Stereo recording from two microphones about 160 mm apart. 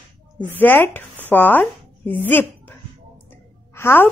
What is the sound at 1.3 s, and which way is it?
Chopping, 10° left (ahead or behind).